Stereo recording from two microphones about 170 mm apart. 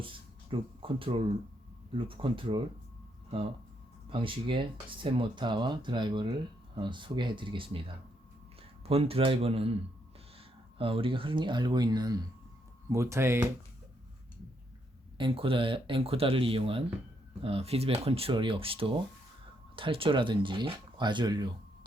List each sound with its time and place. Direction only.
0.0 s a sound: 30° right (ahead or behind)
2.0 s speech: 30° right (ahead or behind)
4.1 s speech: 30° right (ahead or behind); by 13.5 s 15° right (ahead or behind)
15.2 s speech: 30° right (ahead or behind)